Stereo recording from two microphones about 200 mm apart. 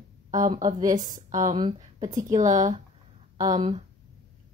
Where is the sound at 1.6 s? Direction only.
30° right (ahead or behind).